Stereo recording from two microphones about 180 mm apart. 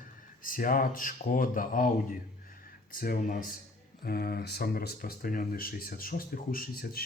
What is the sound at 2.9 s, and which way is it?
Speech, 50° left (ahead or behind).